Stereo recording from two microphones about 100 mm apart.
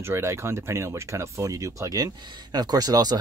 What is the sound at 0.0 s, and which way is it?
Speech, 25° right (ahead or behind).